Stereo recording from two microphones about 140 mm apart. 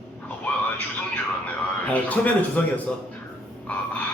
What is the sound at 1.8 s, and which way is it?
A man's voice, 10° left (ahead or behind).